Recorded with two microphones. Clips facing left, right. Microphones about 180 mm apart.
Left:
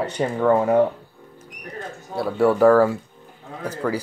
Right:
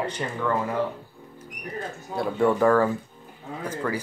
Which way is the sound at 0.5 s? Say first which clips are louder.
Left 10 dB; 60° left (ahead or behind).